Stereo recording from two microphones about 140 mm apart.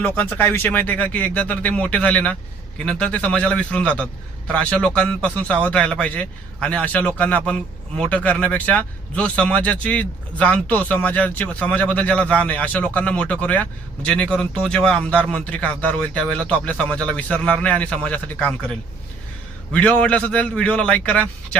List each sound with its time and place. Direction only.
0.0 s speech: 10° left (ahead or behind)
19.7 s speech: 10° left (ahead or behind)